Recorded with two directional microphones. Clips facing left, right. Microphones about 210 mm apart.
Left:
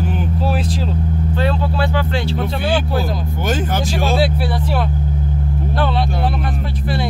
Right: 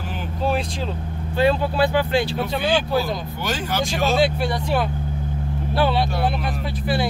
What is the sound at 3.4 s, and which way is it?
Speech, 50° left (ahead or behind).